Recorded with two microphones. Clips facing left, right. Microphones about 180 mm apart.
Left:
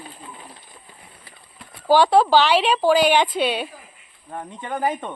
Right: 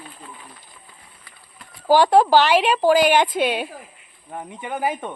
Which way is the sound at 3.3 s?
50° right (ahead or behind).